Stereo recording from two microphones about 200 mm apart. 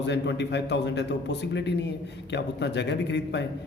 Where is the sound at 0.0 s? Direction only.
60° left (ahead or behind).